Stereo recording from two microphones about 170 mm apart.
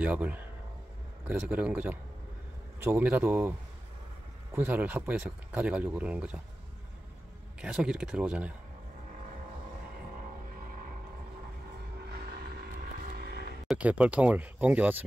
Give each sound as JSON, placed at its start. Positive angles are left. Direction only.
{"t": 0.0, "sound": "speech", "side_deg": -10}
{"t": 4.6, "sound": "speech", "side_deg": -10}
{"t": 7.6, "sound": "speech", "side_deg": -5}
{"t": 12.1, "sound": "vehicle", "side_deg": -70}
{"t": 13.7, "sound": "speech", "side_deg": -10}